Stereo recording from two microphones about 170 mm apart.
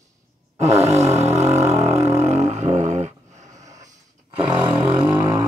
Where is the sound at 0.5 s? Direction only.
40° right (ahead or behind).